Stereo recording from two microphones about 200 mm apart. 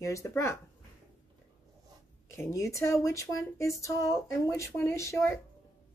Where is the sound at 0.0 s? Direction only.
15° left (ahead or behind).